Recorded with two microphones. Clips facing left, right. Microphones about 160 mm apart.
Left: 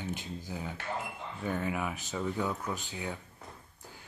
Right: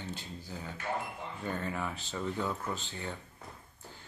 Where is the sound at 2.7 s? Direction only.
15° left (ahead or behind).